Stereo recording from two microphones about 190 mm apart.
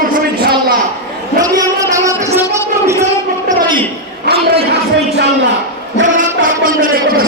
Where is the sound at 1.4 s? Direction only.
20° right (ahead or behind).